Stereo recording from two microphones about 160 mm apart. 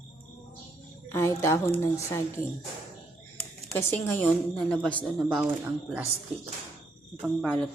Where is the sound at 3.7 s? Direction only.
15° left (ahead or behind).